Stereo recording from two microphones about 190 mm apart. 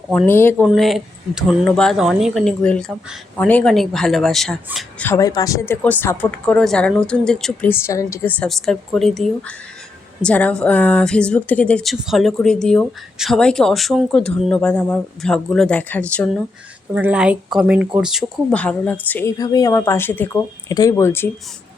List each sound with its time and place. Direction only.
0.1 s speech: 10° left (ahead or behind)
0.7 s a woman's voice: centre (ahead or behind)
5.0 s a woman's voice: 15° left (ahead or behind)
16.9 s a woman's voice: 5° right (ahead or behind); by 19.3 s 10° left (ahead or behind)
19.4 s speech: 20° left (ahead or behind)